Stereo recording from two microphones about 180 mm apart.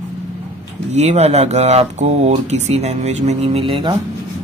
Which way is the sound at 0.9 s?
40° right (ahead or behind).